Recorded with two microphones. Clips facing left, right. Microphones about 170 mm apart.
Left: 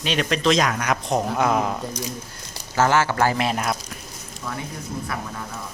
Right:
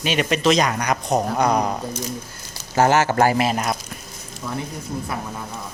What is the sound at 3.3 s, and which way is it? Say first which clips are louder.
Speech: right 3 dB; 5° right (ahead or behind).